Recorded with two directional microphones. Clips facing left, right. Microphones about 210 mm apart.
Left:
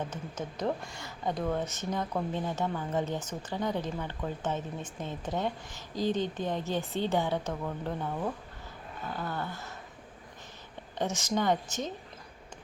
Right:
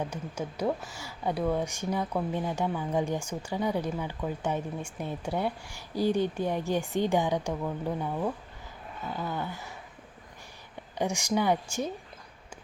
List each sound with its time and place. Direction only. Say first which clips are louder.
0.0 s speech: right 3 dB; 10° right (ahead or behind)
10.9 s speech: right 2 dB; 15° right (ahead or behind)